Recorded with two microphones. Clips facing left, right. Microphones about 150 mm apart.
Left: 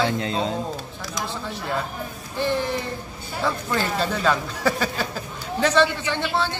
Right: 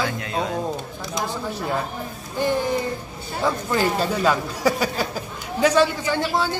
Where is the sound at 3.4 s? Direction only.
15° right (ahead or behind).